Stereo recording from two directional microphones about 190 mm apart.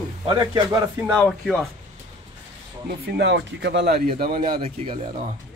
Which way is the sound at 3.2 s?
65° right (ahead or behind).